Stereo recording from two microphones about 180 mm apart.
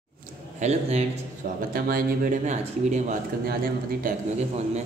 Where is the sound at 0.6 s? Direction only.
40° right (ahead or behind).